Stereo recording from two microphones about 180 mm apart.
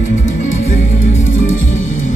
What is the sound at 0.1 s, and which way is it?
Music, 40° left (ahead or behind).